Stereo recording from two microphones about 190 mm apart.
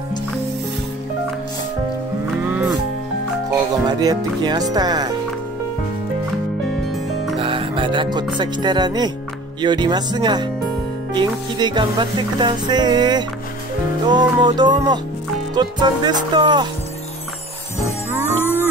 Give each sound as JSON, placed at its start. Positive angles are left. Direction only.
{"t": 3.8, "sound": "music", "side_deg": -20}
{"t": 7.3, "sound": "music", "side_deg": -25}
{"t": 18.2, "sound": "music", "side_deg": 10}